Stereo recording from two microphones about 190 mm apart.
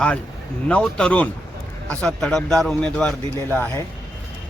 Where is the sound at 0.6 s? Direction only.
5° left (ahead or behind).